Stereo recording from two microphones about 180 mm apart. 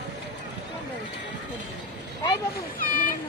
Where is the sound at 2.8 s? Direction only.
50° left (ahead or behind).